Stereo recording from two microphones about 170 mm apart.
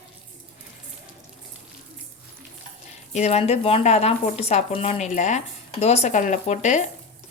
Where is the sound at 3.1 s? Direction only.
40° left (ahead or behind).